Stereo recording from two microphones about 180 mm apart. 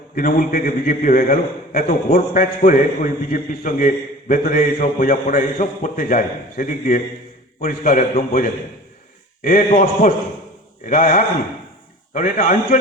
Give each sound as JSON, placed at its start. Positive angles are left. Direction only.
{"t": 0.2, "sound": "a man's voice", "side_deg": 50}